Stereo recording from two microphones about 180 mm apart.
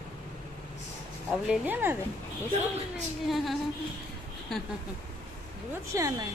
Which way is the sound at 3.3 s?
Centre (ahead or behind).